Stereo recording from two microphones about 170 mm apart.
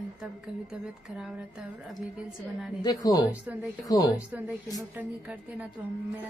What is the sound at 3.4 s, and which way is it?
Speech, 10° right (ahead or behind).